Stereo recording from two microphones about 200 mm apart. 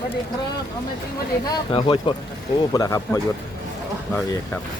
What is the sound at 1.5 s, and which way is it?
Speech, 25° left (ahead or behind).